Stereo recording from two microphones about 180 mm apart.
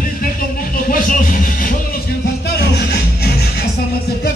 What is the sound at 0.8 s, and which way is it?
Music, 50° left (ahead or behind).